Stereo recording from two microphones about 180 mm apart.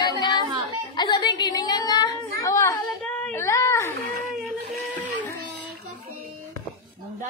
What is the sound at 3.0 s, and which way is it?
Speech, 5° left (ahead or behind).